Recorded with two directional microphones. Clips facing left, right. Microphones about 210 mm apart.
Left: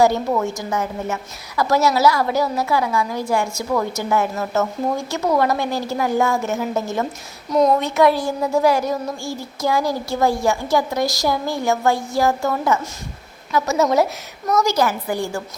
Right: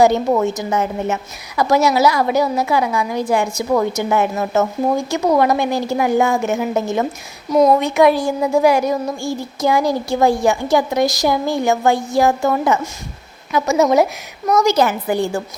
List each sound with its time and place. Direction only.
0.3 s a woman's voice: 20° right (ahead or behind)